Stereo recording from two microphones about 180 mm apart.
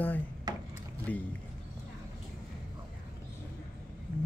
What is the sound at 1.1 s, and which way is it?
Speech, 10° left (ahead or behind).